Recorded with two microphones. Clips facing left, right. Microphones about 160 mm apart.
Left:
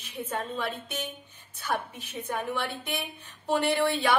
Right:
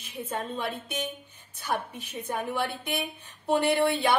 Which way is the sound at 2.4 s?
10° right (ahead or behind).